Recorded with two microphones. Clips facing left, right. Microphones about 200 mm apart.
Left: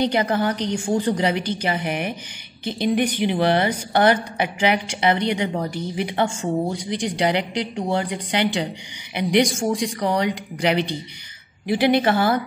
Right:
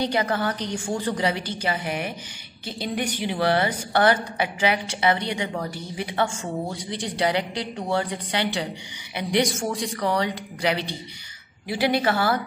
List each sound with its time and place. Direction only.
0.0 s a woman's voice: 20° left (ahead or behind)